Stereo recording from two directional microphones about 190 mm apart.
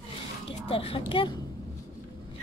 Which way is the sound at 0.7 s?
30° left (ahead or behind).